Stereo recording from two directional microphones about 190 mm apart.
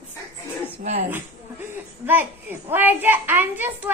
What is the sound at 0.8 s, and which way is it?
Speech, 35° right (ahead or behind).